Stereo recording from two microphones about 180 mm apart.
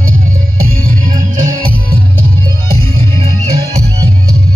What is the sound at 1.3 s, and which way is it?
Music, 50° right (ahead or behind).